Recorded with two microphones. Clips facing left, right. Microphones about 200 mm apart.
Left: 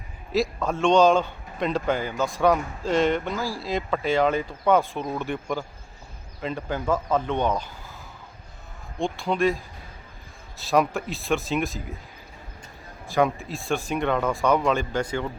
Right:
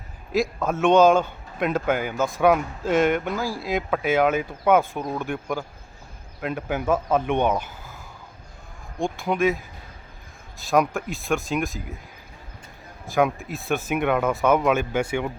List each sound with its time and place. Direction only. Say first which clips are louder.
0.3 s speech: right 1 dB; 5° right (ahead or behind)
9.0 s speech: right 1 dB; 15° right (ahead or behind)
10.7 s speech: right 1 dB; centre (ahead or behind)
13.1 s speech: right 1 dB; centre (ahead or behind)